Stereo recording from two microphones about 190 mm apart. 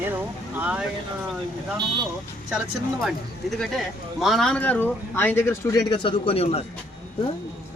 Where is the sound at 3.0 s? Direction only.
Centre (ahead or behind); by 6.6 s 30° left (ahead or behind).